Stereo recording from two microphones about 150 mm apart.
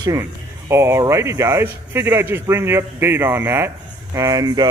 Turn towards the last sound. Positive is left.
turn(degrees=-25)  # may be behind; listen again after turning